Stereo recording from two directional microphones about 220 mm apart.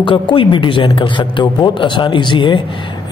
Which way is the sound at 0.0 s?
25° left (ahead or behind).